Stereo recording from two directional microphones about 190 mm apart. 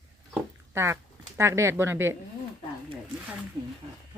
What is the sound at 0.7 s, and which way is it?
Speech, 15° right (ahead or behind).